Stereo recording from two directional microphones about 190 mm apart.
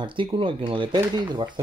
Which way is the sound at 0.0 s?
25° right (ahead or behind).